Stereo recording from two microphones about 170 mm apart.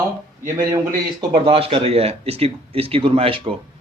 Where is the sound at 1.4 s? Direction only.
35° right (ahead or behind).